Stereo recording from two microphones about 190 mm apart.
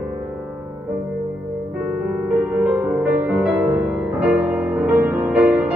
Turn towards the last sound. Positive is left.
turn(degrees=-5)  # may be behind; listen again after turning